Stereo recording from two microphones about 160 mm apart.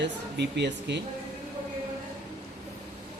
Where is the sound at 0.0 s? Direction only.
90° right.